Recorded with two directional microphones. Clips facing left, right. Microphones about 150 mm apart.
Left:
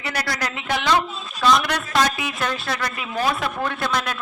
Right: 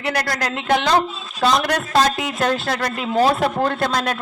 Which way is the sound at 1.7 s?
50° right (ahead or behind).